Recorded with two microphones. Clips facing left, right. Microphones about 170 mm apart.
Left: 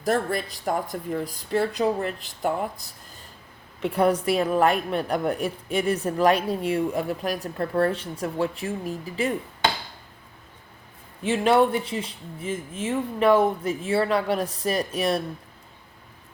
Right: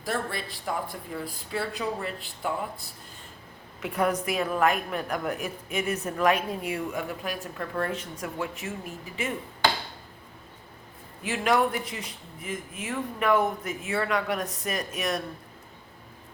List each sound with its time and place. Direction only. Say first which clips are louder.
0.0 s speech: left 7 dB; 45° left (ahead or behind)
3.8 s a woman's voice: left 5 dB; 30° left (ahead or behind)
11.2 s speech: left 5 dB; 30° left (ahead or behind)